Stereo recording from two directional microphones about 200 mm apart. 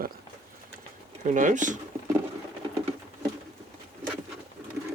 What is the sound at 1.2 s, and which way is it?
Speech, 40° right (ahead or behind).